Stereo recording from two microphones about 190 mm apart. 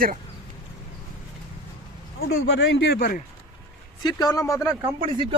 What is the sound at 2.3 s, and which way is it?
Speech, 65° left (ahead or behind).